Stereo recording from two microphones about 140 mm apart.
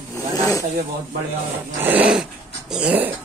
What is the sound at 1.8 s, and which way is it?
Dog, 10° right (ahead or behind).